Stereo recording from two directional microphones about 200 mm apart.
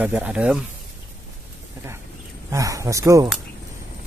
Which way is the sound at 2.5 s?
15° right (ahead or behind).